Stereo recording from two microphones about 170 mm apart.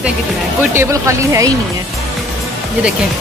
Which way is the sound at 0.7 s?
15° right (ahead or behind).